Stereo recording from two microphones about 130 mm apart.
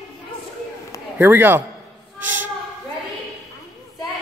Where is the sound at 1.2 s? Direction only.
15° right (ahead or behind).